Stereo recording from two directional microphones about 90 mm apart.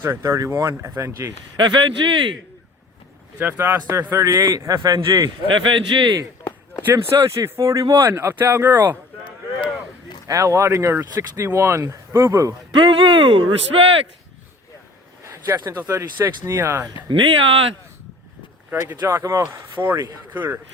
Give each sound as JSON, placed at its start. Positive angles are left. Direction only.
{"t": 0.0, "sound": "speech", "side_deg": -35}
{"t": 1.5, "sound": "speech", "side_deg": -55}
{"t": 3.3, "sound": "speech", "side_deg": -20}
{"t": 5.6, "sound": "speech", "side_deg": -65}
{"t": 6.9, "sound": "speech", "side_deg": -30}
{"t": 10.2, "sound": "speech", "side_deg": -35}
{"t": 12.7, "sound": "speech", "side_deg": -65}
{"t": 15.2, "sound": "a sound", "side_deg": -35}
{"t": 15.7, "sound": "speech", "side_deg": -25}
{"t": 17.1, "sound": "speech", "side_deg": -75}
{"t": 18.7, "sound": "speech", "side_deg": -25}
{"t": 19.8, "sound": "speech", "side_deg": -15}